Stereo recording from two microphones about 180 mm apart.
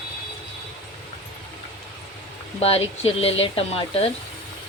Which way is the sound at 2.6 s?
35° left (ahead or behind).